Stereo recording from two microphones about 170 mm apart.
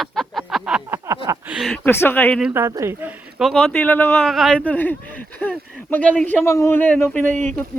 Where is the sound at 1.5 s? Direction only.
5° left (ahead or behind).